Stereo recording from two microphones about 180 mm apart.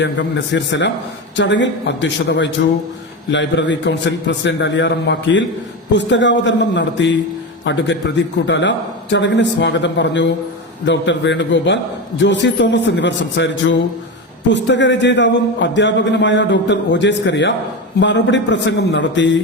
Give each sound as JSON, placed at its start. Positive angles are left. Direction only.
{"t": 0.0, "sound": "a man's voice", "side_deg": 80}